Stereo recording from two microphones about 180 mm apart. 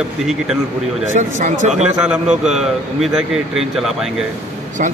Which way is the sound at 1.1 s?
45° right (ahead or behind).